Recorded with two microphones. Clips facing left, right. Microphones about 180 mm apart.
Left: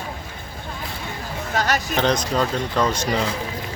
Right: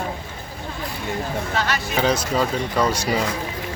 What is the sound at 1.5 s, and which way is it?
Speech, 45° left (ahead or behind).